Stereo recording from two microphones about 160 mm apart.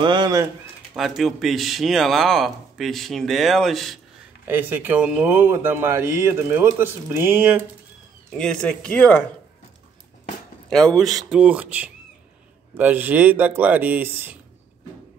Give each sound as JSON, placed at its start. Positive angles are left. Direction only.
{"t": 0.0, "sound": "speech", "side_deg": -30}
{"t": 0.9, "sound": "a man's voice", "side_deg": 0}
{"t": 4.5, "sound": "speech", "side_deg": -10}
{"t": 8.3, "sound": "a man's voice", "side_deg": 5}
{"t": 10.7, "sound": "a man's voice", "side_deg": 0}